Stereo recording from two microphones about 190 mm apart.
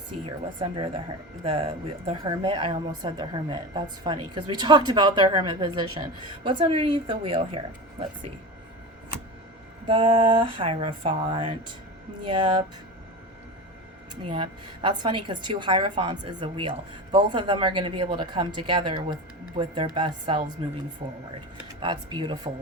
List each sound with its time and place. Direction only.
0.6 s speech: 25° right (ahead or behind)
9.8 s speech: 30° right (ahead or behind)
14.3 s a woman's voice: 25° right (ahead or behind)
21.8 s speech: 25° right (ahead or behind)